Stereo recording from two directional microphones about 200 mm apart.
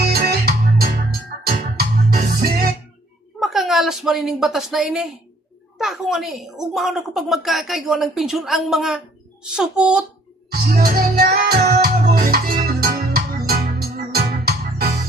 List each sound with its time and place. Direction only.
0.1 s music: 50° right (ahead or behind)
3.4 s a woman's voice: centre (ahead or behind)
10.5 s music: 50° right (ahead or behind)